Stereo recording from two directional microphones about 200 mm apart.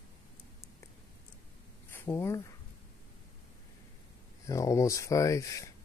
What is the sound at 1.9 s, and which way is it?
Speech, 10° left (ahead or behind).